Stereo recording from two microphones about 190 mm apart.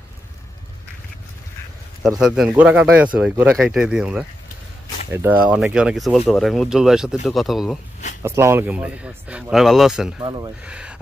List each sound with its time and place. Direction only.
2.0 s speech: centre (ahead or behind)
8.2 s speech: 15° right (ahead or behind)
10.2 s speech: 25° right (ahead or behind)
10.6 s speech: 5° right (ahead or behind)